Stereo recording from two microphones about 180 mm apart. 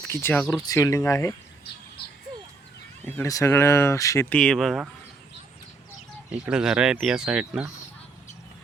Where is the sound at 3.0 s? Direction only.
15° left (ahead or behind).